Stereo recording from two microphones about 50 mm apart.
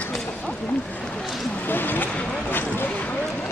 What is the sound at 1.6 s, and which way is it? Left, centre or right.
Boat, left.